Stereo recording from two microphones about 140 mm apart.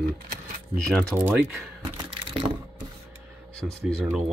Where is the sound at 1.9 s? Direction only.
40° right (ahead or behind).